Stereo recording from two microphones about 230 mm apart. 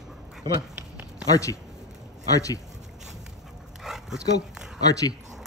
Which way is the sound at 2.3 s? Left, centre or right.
Centre.